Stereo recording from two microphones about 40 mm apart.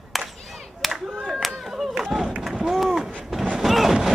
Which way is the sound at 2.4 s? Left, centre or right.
Centre.